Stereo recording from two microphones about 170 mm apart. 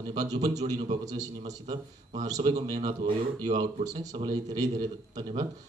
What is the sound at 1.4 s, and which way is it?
Speech, 40° right (ahead or behind).